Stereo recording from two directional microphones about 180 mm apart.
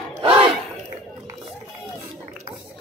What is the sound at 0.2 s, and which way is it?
Battle cry, 30° right (ahead or behind).